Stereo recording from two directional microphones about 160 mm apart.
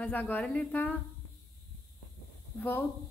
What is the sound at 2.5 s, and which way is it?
Speech, 10° left (ahead or behind).